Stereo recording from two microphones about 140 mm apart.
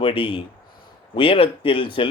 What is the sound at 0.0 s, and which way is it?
Speech, 40° left (ahead or behind).